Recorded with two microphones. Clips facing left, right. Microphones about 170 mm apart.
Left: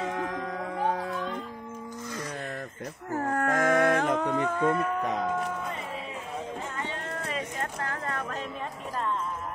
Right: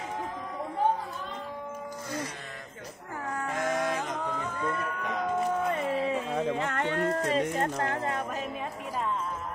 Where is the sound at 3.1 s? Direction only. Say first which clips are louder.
Left 7 dB; 45° left (ahead or behind).